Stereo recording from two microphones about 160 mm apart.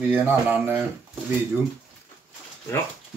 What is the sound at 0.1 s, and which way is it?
Speech, 10° right (ahead or behind).